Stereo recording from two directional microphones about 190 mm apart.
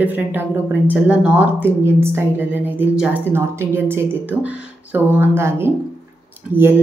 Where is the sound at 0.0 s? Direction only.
10° right (ahead or behind).